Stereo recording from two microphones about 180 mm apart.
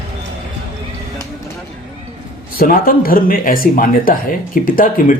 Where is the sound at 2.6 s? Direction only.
55° left (ahead or behind).